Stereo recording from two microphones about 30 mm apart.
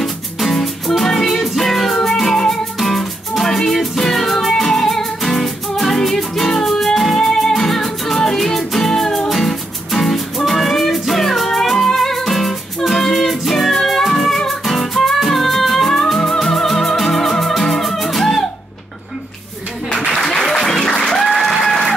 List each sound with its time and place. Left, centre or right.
0.0 s music: centre
2.3 s music: centre
7.2 s music: centre
19.9 s applause: left
20.2 s music: left
20.9 s applause: left
21.2 s applause: centre